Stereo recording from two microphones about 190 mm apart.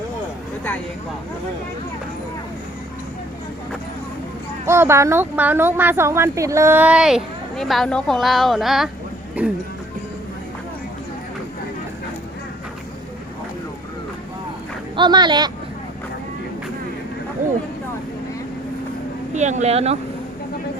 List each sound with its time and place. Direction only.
4.6 s speech: 15° right (ahead or behind)
14.9 s a man's voice: 25° right (ahead or behind)
19.3 s speech: 40° right (ahead or behind)